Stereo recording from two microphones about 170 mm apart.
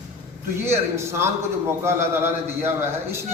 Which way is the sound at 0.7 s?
15° right (ahead or behind).